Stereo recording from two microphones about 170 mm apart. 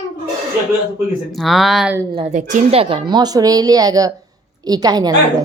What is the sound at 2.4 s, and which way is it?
Speech, 45° right (ahead or behind).